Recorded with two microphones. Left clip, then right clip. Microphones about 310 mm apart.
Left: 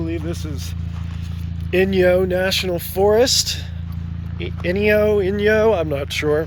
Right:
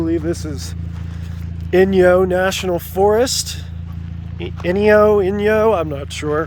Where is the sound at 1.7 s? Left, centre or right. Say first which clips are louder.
Right 4 dB; centre.